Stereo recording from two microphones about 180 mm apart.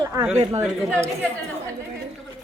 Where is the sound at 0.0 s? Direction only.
20° right (ahead or behind).